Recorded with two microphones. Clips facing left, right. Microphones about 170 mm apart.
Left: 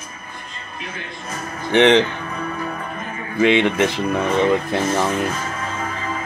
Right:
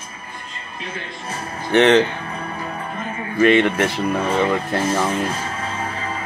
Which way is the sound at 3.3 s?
15° left (ahead or behind).